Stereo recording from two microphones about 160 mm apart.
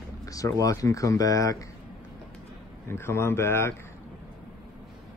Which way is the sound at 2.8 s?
15° left (ahead or behind).